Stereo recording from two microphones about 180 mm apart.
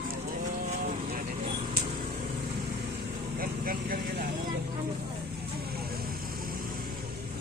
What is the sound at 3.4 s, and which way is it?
Vehicle, 50° right (ahead or behind).